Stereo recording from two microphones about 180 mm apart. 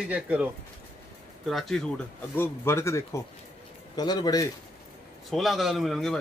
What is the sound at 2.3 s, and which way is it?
A man's voice, 15° left (ahead or behind).